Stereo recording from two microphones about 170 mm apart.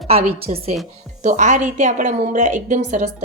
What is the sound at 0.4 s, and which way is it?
A woman's voice, 35° right (ahead or behind).